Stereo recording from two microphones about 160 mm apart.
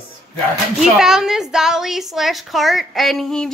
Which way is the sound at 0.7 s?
5° right (ahead or behind).